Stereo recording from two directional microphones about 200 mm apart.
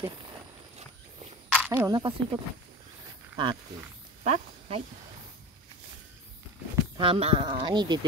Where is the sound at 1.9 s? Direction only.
20° right (ahead or behind).